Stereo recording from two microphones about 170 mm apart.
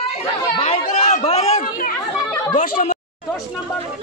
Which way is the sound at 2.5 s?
55° left (ahead or behind).